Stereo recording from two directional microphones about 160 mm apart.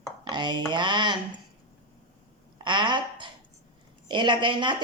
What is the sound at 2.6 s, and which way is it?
Speech, 30° right (ahead or behind).